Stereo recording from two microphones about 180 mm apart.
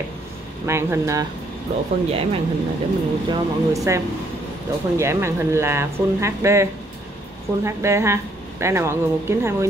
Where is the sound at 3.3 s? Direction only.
20° right (ahead or behind).